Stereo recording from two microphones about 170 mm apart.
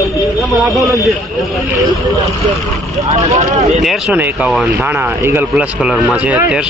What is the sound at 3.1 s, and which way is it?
Speech, 40° right (ahead or behind).